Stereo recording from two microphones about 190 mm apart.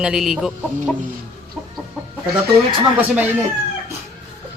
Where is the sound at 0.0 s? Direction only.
Centre (ahead or behind).